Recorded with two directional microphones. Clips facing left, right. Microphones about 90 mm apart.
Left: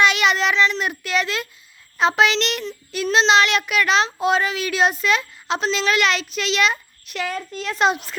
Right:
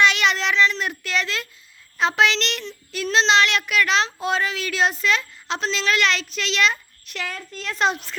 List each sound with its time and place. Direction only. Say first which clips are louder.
0.0 s a child's voice: left 2 dB; 10° left (ahead or behind)